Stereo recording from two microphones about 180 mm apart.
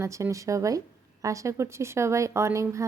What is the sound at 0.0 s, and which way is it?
Speech, 15° right (ahead or behind).